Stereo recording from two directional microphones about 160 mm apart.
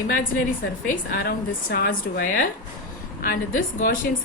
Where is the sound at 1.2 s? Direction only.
75° left (ahead or behind).